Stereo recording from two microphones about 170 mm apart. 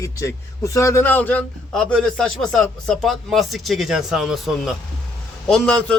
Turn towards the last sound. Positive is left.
turn(degrees=5)  # may be behind; listen again after turning